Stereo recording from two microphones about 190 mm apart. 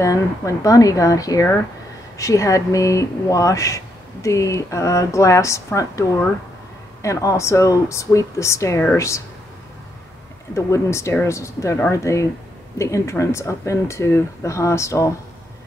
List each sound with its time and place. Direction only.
0.0 s speech: 15° left (ahead or behind)
10.5 s speech: 15° left (ahead or behind)